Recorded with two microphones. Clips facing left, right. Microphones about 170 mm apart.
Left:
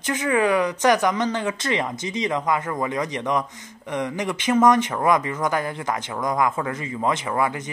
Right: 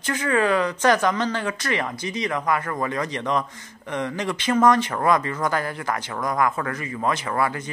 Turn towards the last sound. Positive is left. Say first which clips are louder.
# left 1 dB
turn(degrees=15)  # may be behind; listen again after turning